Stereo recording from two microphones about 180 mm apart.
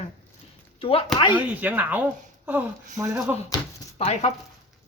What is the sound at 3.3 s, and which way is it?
Speech, 10° right (ahead or behind).